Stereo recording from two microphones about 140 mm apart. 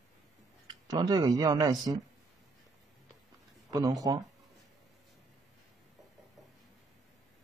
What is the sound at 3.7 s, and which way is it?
Speech, 25° right (ahead or behind).